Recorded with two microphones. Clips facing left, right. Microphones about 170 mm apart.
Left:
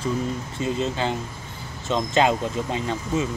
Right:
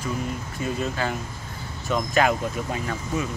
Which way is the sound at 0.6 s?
25° left (ahead or behind).